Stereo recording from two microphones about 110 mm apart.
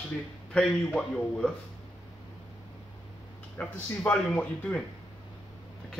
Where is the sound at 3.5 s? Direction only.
15° left (ahead or behind).